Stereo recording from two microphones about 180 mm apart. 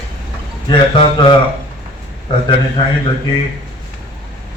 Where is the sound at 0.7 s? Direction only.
25° left (ahead or behind).